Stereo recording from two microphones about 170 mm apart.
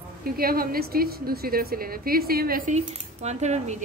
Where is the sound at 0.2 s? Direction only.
60° right (ahead or behind).